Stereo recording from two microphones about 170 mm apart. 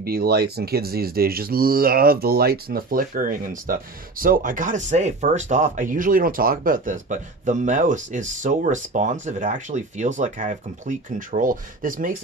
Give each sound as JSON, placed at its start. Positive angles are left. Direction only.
{"t": 0.0, "sound": "speech", "side_deg": -65}